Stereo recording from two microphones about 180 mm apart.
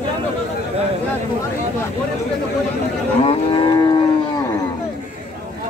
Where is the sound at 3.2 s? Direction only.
25° left (ahead or behind).